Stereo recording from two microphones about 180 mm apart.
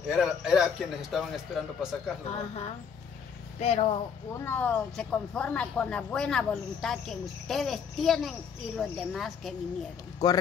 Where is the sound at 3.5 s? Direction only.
35° left (ahead or behind).